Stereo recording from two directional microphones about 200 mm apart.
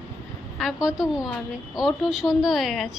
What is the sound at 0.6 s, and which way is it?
A woman's voice, centre (ahead or behind).